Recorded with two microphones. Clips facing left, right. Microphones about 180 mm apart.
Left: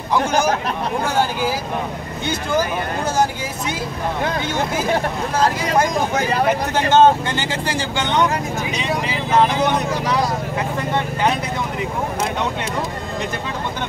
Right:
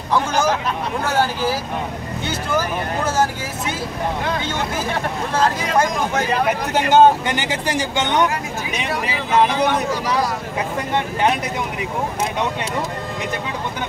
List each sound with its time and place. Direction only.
1.0 s speech: 15° left (ahead or behind)
6.7 s speech: 15° right (ahead or behind)